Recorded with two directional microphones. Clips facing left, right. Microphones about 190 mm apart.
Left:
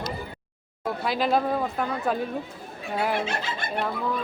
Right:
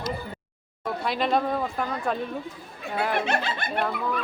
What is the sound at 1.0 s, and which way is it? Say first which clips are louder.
Speech: left 1 dB; centre (ahead or behind).